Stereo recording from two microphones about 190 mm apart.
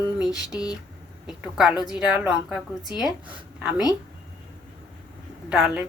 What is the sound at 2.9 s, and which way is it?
Speech, 20° left (ahead or behind).